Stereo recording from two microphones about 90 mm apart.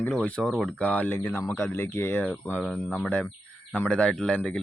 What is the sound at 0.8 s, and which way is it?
Speech, 20° left (ahead or behind).